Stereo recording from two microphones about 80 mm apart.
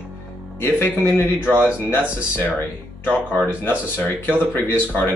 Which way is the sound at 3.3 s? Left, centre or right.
Left.